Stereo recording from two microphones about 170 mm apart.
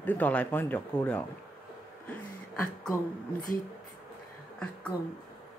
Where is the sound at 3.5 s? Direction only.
55° left (ahead or behind).